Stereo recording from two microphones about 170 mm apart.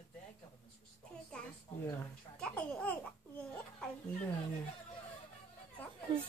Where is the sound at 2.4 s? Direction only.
5° left (ahead or behind).